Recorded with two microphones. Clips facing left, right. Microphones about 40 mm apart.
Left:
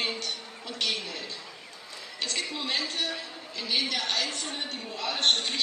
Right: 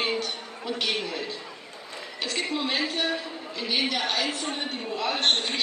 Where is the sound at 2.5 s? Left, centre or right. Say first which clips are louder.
Right 4 dB; centre.